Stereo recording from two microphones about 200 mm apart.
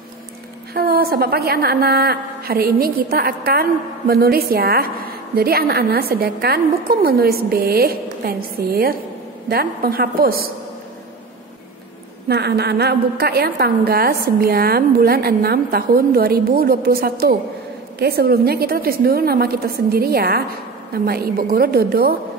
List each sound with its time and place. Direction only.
0.7 s a woman's voice: 50° right (ahead or behind)
12.3 s a woman's voice: 55° right (ahead or behind)